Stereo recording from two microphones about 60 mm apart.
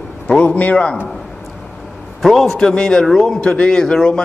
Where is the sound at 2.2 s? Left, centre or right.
Centre.